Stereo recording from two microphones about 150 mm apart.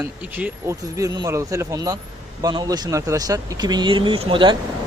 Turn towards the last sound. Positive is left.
turn(degrees=-35)  # may be behind; listen again after turning